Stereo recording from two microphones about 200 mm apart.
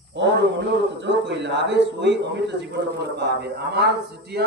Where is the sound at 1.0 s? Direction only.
60° right (ahead or behind).